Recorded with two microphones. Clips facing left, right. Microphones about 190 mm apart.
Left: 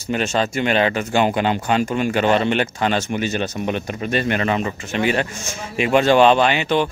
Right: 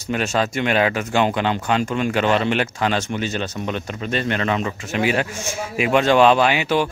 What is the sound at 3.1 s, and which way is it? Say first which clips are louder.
Speech: left 2 dB; 15° left (ahead or behind).